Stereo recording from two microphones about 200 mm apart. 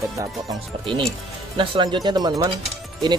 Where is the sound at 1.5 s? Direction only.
25° right (ahead or behind).